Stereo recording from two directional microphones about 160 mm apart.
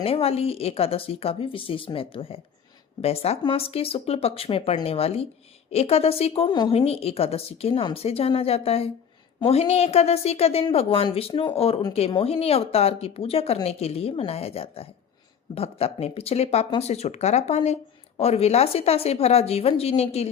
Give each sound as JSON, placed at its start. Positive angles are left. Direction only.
{"t": 0.0, "sound": "speech", "side_deg": 35}